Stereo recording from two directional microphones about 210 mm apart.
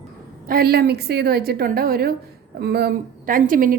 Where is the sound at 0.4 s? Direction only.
45° right (ahead or behind).